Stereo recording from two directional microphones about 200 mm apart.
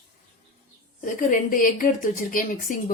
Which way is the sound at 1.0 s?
45° left (ahead or behind).